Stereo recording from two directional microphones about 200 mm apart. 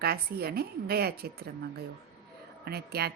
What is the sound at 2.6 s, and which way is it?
Speech, 50° right (ahead or behind).